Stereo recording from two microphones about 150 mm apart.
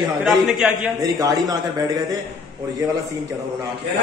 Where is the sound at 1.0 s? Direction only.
25° right (ahead or behind).